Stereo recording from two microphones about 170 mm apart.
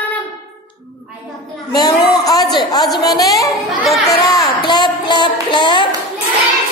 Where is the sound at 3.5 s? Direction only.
Centre (ahead or behind).